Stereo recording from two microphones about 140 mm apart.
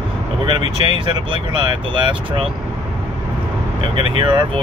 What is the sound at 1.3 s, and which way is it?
Speech, 35° right (ahead or behind).